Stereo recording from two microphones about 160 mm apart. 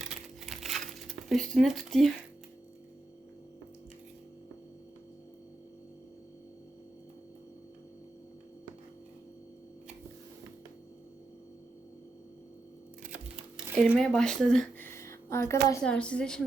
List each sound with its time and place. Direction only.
0.0 s crumpling: 5° right (ahead or behind)
13.8 s speech: 5° right (ahead or behind)
14.8 s a sound: 15° left (ahead or behind)
15.8 s a woman's voice: 5° left (ahead or behind)